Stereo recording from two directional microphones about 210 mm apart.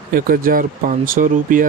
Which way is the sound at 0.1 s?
45° right (ahead or behind).